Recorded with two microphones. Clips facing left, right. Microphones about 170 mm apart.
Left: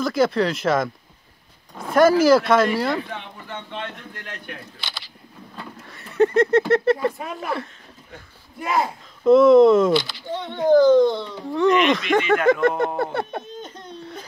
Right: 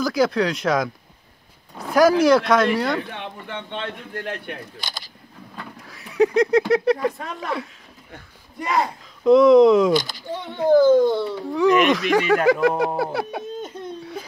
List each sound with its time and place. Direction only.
0.0 s speech: centre (ahead or behind)
3.2 s a sound: 65° right (ahead or behind)
4.2 s speech: 40° right (ahead or behind)
5.8 s a sound: centre (ahead or behind)
7.4 s speech: centre (ahead or behind)
9.9 s speech: 45° right (ahead or behind)
10.3 s a child's voice: 10° right (ahead or behind)